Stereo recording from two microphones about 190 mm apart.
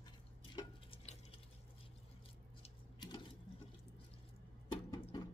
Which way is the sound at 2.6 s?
20° left (ahead or behind).